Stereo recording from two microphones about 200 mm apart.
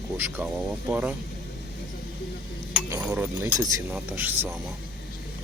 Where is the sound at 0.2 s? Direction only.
5° right (ahead or behind).